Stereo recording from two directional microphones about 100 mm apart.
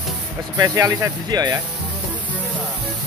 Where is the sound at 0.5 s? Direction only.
40° right (ahead or behind).